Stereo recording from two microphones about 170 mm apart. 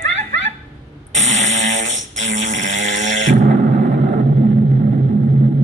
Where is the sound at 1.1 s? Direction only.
90° right.